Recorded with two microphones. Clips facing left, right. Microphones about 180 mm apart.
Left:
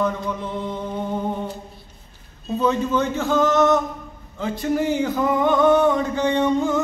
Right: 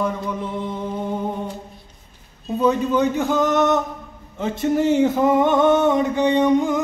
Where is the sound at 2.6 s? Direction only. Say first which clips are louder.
Right 3 dB; 15° right (ahead or behind).